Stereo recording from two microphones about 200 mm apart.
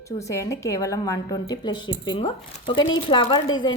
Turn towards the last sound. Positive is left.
turn(degrees=20)  # may be behind; listen again after turning